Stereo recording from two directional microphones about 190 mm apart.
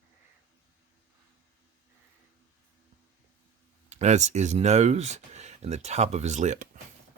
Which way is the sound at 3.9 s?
35° right (ahead or behind).